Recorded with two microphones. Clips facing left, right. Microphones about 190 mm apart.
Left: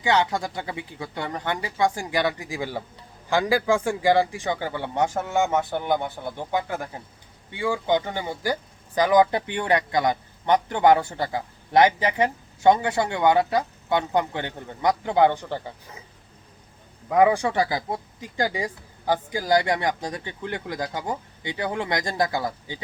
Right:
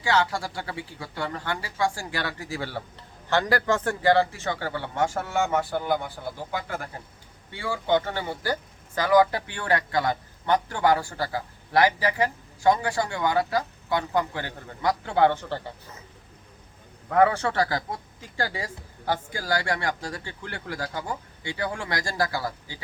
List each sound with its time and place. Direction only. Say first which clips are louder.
0.0 s a man's voice: left 2 dB; 20° left (ahead or behind)
17.1 s a man's voice: left 2 dB; 15° left (ahead or behind)